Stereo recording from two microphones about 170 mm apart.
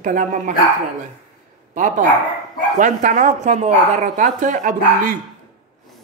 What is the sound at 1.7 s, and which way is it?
Speech, 50° right (ahead or behind).